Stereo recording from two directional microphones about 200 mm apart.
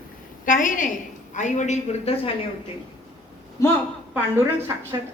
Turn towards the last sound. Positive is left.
turn(degrees=-10)  # may be behind; listen again after turning